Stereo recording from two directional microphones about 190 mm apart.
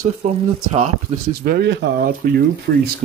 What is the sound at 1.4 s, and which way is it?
Speech, 55° right (ahead or behind).